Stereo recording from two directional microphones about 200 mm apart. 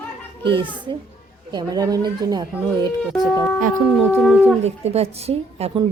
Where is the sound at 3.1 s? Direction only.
Centre (ahead or behind).